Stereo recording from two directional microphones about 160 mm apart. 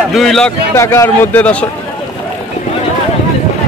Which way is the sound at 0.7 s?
20° left (ahead or behind).